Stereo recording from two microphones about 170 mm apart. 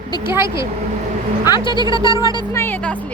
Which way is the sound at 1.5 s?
25° left (ahead or behind).